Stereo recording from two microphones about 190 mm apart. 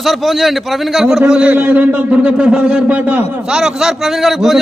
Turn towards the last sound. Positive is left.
turn(degrees=0)  # may be behind; listen again after turning